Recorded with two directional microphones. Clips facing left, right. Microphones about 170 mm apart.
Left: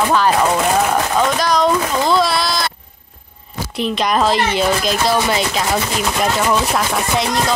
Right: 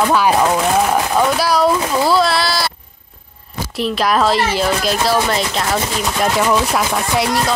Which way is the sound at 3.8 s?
Centre (ahead or behind).